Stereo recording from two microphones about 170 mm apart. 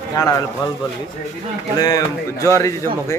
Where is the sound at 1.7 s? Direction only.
20° left (ahead or behind).